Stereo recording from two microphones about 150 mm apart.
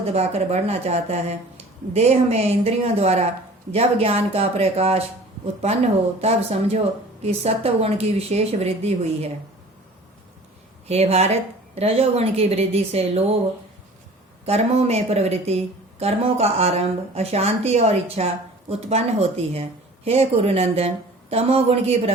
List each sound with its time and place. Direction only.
0.0 s a woman's voice: 45° right (ahead or behind)
10.8 s a woman's voice: 45° right (ahead or behind)
14.4 s a woman's voice: 45° right (ahead or behind)